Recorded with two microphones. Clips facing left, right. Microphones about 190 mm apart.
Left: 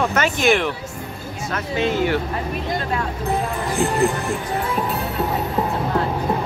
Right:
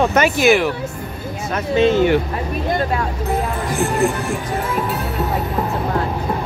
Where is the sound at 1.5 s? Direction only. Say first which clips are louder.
Right 6 dB; 20° right (ahead or behind).